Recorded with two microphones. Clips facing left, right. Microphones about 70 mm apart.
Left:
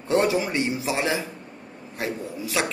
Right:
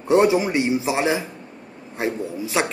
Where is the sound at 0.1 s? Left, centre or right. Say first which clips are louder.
Right 5 dB; centre.